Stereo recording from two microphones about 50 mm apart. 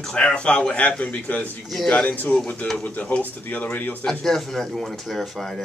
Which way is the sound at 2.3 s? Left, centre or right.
Centre.